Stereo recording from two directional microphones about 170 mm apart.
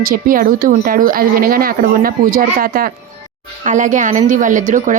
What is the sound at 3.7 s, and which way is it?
A woman's voice, 45° right (ahead or behind).